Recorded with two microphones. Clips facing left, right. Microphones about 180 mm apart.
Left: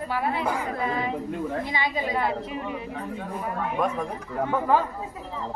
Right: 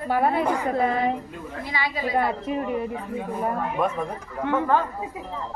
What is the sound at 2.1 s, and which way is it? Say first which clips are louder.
Speech: right 3 dB; 50° right (ahead or behind).